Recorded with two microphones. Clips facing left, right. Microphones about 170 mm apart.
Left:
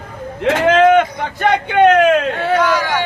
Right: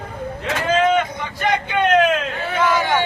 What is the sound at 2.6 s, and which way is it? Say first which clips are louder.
Speech: right 2 dB; 20° right (ahead or behind).